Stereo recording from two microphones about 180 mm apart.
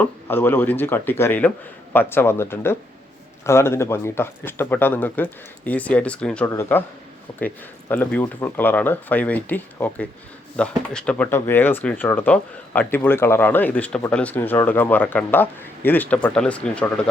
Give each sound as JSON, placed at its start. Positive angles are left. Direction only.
{"t": 0.0, "sound": "speech", "side_deg": 10}